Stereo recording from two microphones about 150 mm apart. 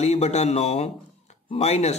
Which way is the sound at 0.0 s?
45° left (ahead or behind).